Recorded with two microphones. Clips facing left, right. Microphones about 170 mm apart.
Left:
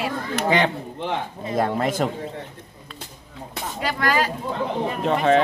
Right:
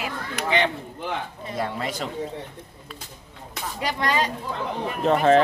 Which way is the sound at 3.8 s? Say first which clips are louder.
Left 2 dB; 20° right (ahead or behind).